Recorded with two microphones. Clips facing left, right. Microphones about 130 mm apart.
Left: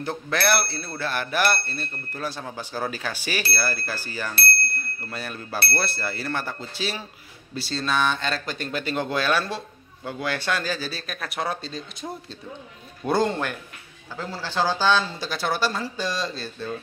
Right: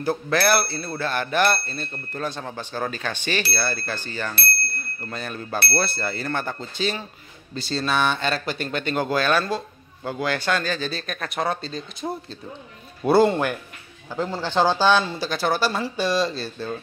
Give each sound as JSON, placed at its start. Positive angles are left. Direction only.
{"t": 0.0, "sound": "speech", "side_deg": -5}
{"t": 14.1, "sound": "a man's voice", "side_deg": -20}
{"t": 15.1, "sound": "speech", "side_deg": 0}